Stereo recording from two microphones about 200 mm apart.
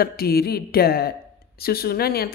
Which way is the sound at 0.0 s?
50° left (ahead or behind).